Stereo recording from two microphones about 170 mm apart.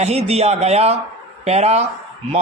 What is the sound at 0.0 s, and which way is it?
Speech, 40° right (ahead or behind).